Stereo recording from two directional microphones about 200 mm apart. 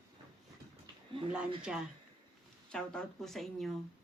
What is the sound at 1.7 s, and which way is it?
Speech, centre (ahead or behind).